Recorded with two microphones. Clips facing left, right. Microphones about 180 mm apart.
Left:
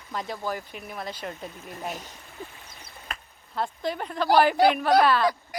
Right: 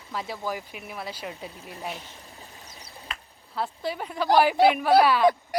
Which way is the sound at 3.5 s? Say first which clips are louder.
Left 1 dB; 5° right (ahead or behind).